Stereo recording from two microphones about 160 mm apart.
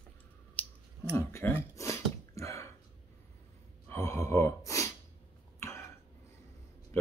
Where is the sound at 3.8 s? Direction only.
15° left (ahead or behind).